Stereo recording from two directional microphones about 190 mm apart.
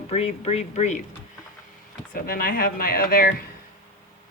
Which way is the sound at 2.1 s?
50° left (ahead or behind).